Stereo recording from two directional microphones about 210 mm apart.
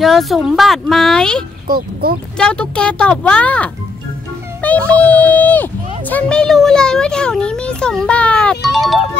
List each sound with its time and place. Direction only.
0.0 s speech: centre (ahead or behind)
1.7 s speech: 45° right (ahead or behind)
2.3 s speech: 5° left (ahead or behind)